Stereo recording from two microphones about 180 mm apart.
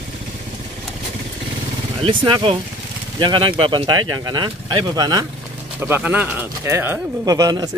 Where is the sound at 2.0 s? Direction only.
30° right (ahead or behind).